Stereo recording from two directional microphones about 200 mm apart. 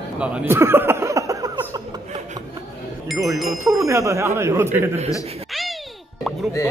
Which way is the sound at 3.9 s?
15° right (ahead or behind).